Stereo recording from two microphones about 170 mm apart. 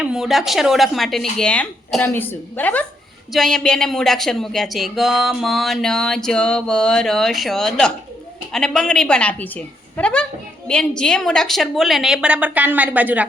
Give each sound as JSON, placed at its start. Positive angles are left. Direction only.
{"t": 0.0, "sound": "speech", "side_deg": -5}